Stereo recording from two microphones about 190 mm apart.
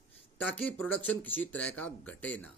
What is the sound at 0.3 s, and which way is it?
Speech, 5° left (ahead or behind).